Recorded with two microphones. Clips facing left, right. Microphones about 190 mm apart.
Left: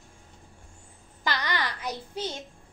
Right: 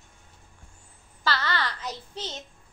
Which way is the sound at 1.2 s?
15° left (ahead or behind).